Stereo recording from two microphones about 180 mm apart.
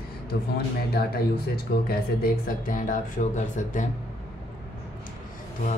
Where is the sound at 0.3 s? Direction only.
60° left (ahead or behind).